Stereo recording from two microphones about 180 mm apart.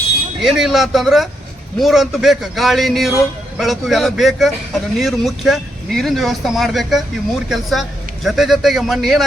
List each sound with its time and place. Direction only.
0.4 s speech: centre (ahead or behind)